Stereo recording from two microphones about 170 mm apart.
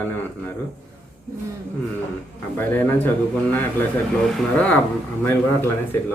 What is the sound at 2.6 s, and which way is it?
Speech, 10° left (ahead or behind).